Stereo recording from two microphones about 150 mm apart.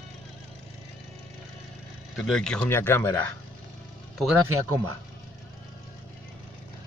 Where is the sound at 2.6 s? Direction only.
15° left (ahead or behind).